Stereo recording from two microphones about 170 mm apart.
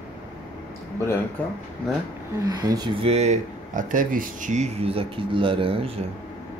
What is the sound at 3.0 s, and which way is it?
Speech, 40° right (ahead or behind).